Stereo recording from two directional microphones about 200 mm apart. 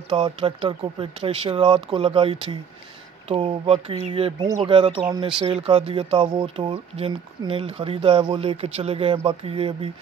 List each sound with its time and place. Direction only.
0.1 s speech: 25° right (ahead or behind)